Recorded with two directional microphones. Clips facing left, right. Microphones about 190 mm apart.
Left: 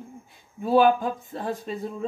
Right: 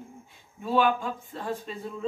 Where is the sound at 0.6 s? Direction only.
40° left (ahead or behind).